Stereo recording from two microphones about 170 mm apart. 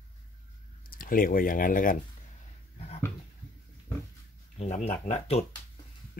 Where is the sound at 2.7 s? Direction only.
35° left (ahead or behind).